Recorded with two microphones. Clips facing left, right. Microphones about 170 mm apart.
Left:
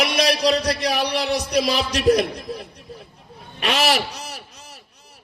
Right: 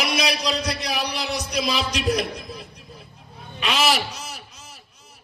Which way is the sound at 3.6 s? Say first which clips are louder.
Left 1 dB; 60° left (ahead or behind).